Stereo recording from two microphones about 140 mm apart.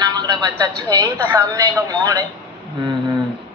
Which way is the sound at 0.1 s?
30° right (ahead or behind).